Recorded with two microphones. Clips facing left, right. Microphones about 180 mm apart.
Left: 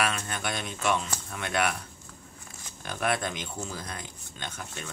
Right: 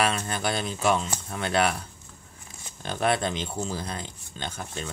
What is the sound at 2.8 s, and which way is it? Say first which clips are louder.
Speech: right 4 dB; 30° right (ahead or behind).